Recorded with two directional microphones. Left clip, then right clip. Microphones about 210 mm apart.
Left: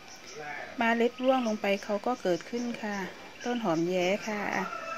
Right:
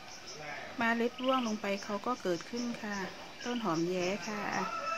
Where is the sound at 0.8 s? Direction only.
15° left (ahead or behind).